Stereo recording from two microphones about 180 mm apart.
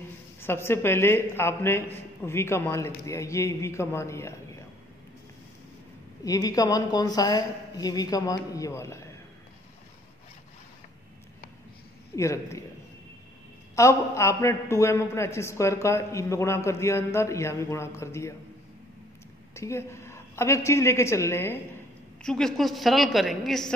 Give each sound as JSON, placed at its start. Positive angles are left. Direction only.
{"t": 0.4, "sound": "a man's voice", "side_deg": 15}
{"t": 6.2, "sound": "a woman's voice", "side_deg": 20}
{"t": 12.2, "sound": "a man's voice", "side_deg": 15}
{"t": 13.7, "sound": "a man's voice", "side_deg": 15}
{"t": 19.5, "sound": "a woman's voice", "side_deg": 15}
{"t": 22.2, "sound": "a woman's voice", "side_deg": 5}